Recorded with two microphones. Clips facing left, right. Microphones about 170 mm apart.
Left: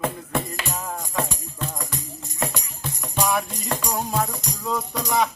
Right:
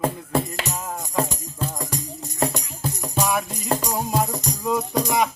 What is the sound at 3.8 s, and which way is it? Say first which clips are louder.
Music: right 2 dB; 15° right (ahead or behind).